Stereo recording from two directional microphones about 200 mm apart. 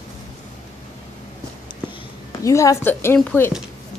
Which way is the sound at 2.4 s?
15° left (ahead or behind).